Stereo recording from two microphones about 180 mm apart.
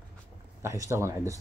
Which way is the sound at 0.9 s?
15° right (ahead or behind).